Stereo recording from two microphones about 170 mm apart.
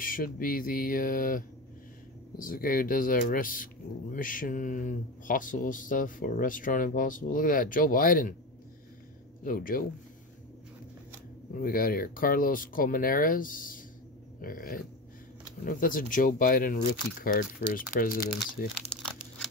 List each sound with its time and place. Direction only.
0.0 s speech: 55° left (ahead or behind)
9.4 s speech: 55° left (ahead or behind)
11.5 s speech: 55° left (ahead or behind)